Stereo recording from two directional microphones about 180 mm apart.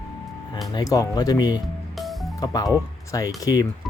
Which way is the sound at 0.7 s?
20° left (ahead or behind).